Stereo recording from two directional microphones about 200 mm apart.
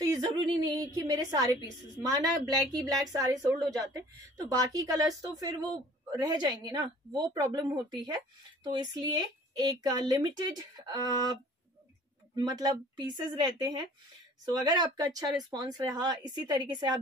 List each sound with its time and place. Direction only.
0.0 s a woman's voice: 20° right (ahead or behind)
12.4 s a woman's voice: 20° right (ahead or behind)